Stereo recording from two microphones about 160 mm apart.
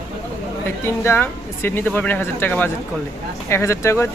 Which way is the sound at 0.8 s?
15° left (ahead or behind).